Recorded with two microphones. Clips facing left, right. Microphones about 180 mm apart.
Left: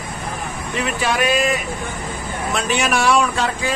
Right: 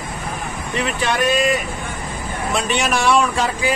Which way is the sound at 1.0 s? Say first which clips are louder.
Right 1 dB; 5° left (ahead or behind).